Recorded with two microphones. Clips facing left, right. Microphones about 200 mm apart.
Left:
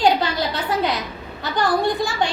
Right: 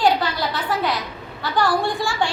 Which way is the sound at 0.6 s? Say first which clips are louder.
Left 1 dB; 20° left (ahead or behind).